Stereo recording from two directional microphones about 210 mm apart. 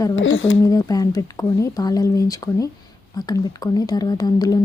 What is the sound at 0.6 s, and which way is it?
Speech, 15° left (ahead or behind).